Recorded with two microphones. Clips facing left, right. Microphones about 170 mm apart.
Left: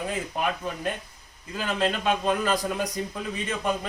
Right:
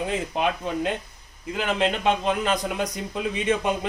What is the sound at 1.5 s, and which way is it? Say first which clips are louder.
A man's voice: right 2 dB; 20° right (ahead or behind).